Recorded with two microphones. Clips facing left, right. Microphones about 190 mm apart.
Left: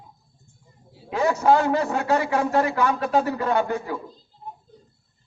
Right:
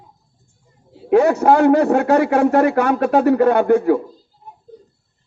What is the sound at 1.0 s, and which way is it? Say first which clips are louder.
A man's voice: right 7 dB; 60° right (ahead or behind).